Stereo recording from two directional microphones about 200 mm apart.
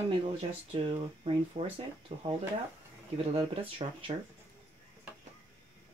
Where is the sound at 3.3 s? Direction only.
25° right (ahead or behind).